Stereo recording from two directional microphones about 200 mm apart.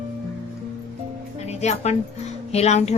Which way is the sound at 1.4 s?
35° left (ahead or behind).